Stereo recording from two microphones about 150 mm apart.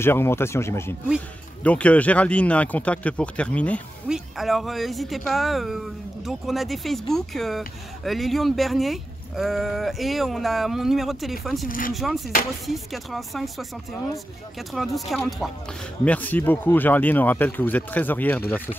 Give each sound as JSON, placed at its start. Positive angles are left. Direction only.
{"t": 0.0, "sound": "speech", "side_deg": 15}
{"t": 14.7, "sound": "speech", "side_deg": 0}
{"t": 16.0, "sound": "speech", "side_deg": 10}